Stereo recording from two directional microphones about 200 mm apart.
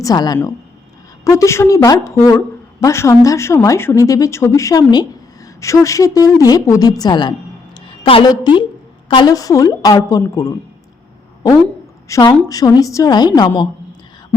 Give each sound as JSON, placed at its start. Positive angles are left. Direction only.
{"t": 0.0, "sound": "a woman's voice", "side_deg": 20}
{"t": 12.0, "sound": "a woman's voice", "side_deg": 20}